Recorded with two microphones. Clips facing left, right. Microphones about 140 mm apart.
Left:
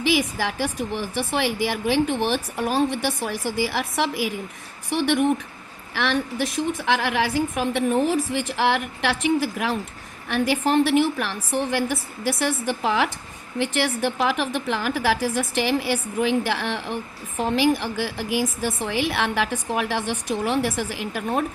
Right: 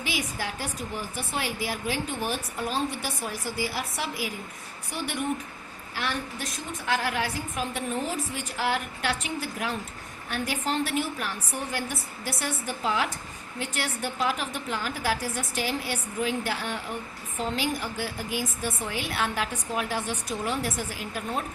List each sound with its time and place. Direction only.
0.1 s a woman's voice: 90° left
10.2 s a woman's voice: 85° left; by 21.4 s 70° left (ahead or behind)